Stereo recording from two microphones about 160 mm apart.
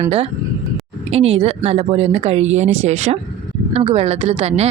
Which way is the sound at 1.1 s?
35° right (ahead or behind).